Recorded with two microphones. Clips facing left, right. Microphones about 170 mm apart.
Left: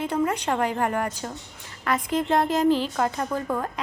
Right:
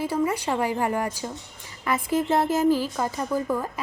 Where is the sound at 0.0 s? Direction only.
5° right (ahead or behind).